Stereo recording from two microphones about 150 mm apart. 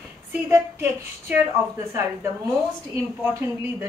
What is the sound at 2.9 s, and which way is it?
Speech, 15° right (ahead or behind).